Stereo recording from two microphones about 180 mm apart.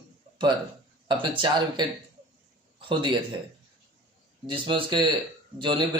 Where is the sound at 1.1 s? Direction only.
25° right (ahead or behind).